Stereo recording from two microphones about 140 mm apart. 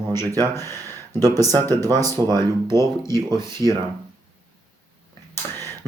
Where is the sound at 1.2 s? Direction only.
25° right (ahead or behind).